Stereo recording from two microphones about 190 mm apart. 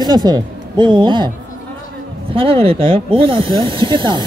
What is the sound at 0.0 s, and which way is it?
Speech, 20° right (ahead or behind).